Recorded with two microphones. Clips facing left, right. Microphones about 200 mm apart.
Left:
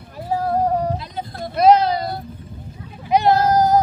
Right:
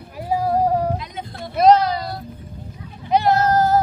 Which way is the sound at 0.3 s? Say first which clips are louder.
Right 1 dB; 10° right (ahead or behind).